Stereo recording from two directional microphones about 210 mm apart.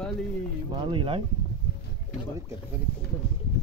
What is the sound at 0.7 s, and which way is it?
Speech, 20° right (ahead or behind).